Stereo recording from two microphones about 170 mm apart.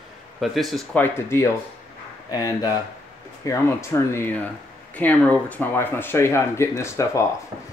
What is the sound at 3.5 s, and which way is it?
Speech, 15° left (ahead or behind).